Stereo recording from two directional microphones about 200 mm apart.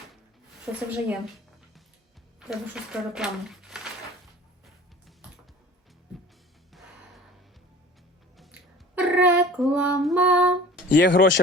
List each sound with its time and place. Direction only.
0.6 s a woman's voice: 5° right (ahead or behind)
2.5 s speech: 5° right (ahead or behind)
9.0 s a sound: 5° right (ahead or behind)
10.0 s a woman's voice: 5° right (ahead or behind)
10.8 s speech: 50° left (ahead or behind)